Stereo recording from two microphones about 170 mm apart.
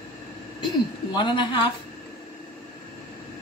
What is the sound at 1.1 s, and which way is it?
Speech, 30° left (ahead or behind).